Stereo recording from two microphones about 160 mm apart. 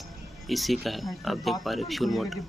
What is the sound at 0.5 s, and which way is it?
Speech, centre (ahead or behind).